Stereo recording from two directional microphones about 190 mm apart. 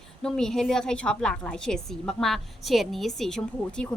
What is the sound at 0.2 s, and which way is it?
A woman's voice, centre (ahead or behind).